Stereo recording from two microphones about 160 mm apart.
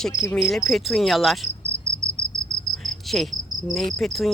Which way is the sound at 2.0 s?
50° right (ahead or behind).